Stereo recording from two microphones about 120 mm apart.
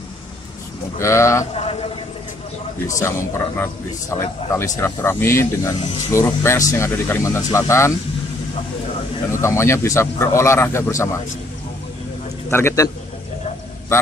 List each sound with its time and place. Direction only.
0.9 s a man's voice: 25° left (ahead or behind)
1.4 s a man's voice: 55° left (ahead or behind)
3.0 s a man's voice: 20° left (ahead or behind)
9.3 s a man's voice: 25° left (ahead or behind)
12.4 s a man's voice: 20° left (ahead or behind)